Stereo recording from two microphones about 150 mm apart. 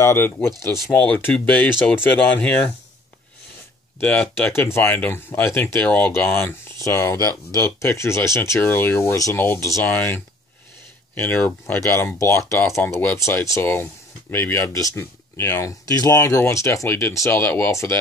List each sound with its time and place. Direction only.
0.0 s speech: 15° left (ahead or behind)
4.0 s speech: 10° left (ahead or behind)